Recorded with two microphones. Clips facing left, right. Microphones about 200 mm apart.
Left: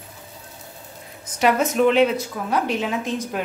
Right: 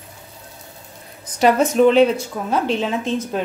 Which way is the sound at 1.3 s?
35° right (ahead or behind).